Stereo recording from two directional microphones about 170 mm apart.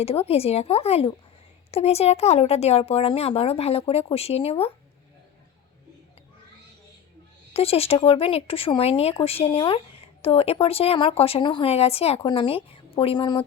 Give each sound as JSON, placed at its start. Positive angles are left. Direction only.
{"t": 0.0, "sound": "speech", "side_deg": 35}
{"t": 7.5, "sound": "speech", "side_deg": 35}